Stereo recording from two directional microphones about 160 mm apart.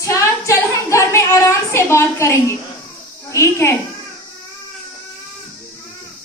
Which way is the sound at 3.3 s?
15° left (ahead or behind).